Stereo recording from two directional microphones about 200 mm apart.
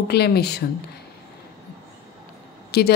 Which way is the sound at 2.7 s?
55° left (ahead or behind).